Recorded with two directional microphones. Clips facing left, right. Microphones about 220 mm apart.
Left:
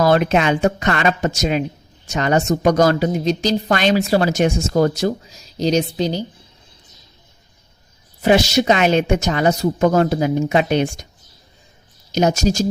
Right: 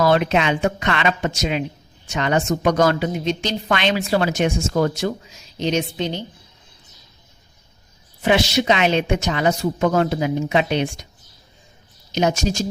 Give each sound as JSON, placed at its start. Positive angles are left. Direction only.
{"t": 0.0, "sound": "a woman's voice", "side_deg": 45}
{"t": 8.2, "sound": "a woman's voice", "side_deg": 40}
{"t": 12.1, "sound": "a woman's voice", "side_deg": 40}